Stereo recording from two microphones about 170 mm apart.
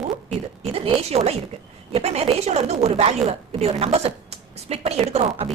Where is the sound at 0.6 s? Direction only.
35° right (ahead or behind).